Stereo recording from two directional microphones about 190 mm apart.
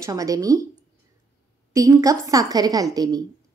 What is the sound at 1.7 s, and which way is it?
A woman's voice, 15° right (ahead or behind).